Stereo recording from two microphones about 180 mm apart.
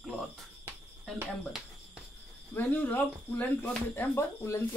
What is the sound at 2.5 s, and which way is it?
Speech, 10° left (ahead or behind).